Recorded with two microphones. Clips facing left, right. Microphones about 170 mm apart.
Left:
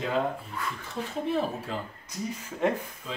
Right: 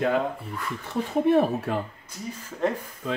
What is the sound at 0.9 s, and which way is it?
Speech, 65° right (ahead or behind).